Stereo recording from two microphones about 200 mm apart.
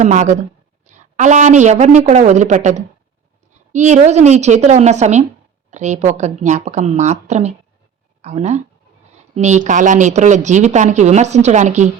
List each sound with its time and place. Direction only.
0.0 s speech: 35° right (ahead or behind)